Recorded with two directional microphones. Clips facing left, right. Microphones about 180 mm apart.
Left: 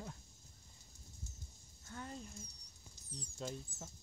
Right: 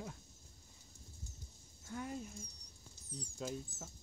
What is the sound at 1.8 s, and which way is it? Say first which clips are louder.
Speech: right 5 dB; 10° right (ahead or behind).